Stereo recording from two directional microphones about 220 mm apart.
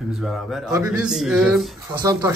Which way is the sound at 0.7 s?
15° right (ahead or behind).